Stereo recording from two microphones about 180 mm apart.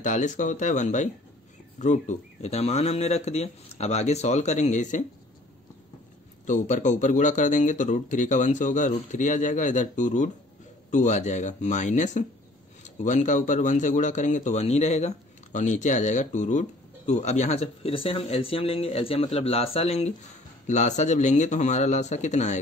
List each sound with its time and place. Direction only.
0.0 s speech: 45° left (ahead or behind)
6.4 s speech: 45° left (ahead or behind)